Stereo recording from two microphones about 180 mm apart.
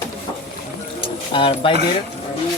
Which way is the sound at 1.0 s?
30° left (ahead or behind).